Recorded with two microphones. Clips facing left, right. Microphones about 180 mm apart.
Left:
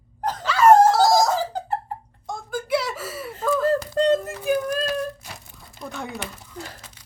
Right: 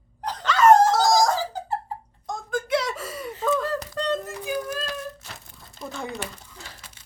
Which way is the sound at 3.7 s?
50° left (ahead or behind).